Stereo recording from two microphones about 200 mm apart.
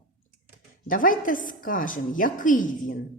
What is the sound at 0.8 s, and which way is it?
A woman's voice, 45° left (ahead or behind).